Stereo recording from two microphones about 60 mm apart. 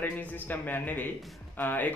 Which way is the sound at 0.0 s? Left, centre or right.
Left.